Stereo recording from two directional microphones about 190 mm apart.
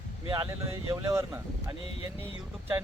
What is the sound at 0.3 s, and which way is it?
Speech, 15° right (ahead or behind).